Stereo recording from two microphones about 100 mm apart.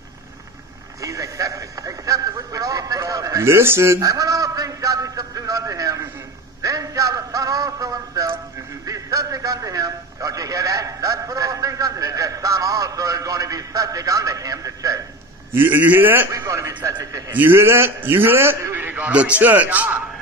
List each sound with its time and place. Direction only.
1.0 s a man's voice: 35° right (ahead or behind)
15.5 s a man's voice: 20° right (ahead or behind)
16.3 s a man's voice: 30° right (ahead or behind)
17.3 s a man's voice: 20° right (ahead or behind)